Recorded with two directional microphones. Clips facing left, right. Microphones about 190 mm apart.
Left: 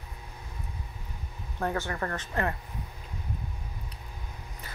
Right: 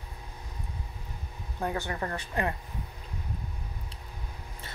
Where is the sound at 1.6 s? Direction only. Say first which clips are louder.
Left 1 dB; 20° right (ahead or behind).